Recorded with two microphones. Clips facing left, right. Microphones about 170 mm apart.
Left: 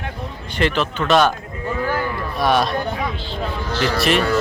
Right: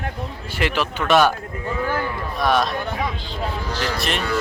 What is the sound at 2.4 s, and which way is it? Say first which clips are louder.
Speech: left 2 dB; centre (ahead or behind).